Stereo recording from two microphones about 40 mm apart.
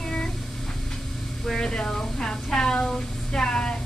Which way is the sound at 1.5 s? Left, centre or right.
Left.